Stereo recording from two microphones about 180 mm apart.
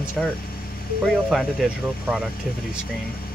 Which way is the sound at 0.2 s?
Centre (ahead or behind).